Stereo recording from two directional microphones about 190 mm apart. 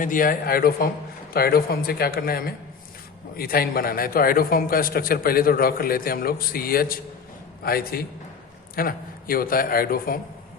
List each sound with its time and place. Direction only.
0.0 s a man's voice: 45° left (ahead or behind)